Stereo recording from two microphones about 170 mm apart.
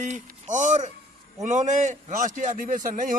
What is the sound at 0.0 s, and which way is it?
A man's voice, 45° right (ahead or behind).